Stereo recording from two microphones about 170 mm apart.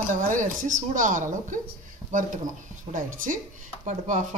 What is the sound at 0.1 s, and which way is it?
Speech, 50° right (ahead or behind).